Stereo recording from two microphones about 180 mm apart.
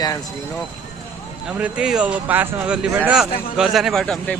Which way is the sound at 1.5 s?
5° right (ahead or behind).